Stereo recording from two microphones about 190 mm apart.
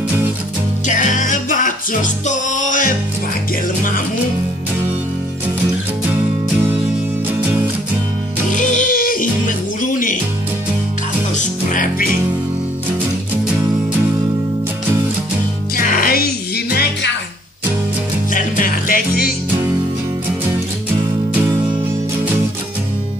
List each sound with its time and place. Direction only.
0.8 s music: 40° left (ahead or behind)
8.5 s music: 45° left (ahead or behind)
11.7 s music: 45° left (ahead or behind)
15.7 s music: 50° left (ahead or behind)
18.3 s music: 45° left (ahead or behind)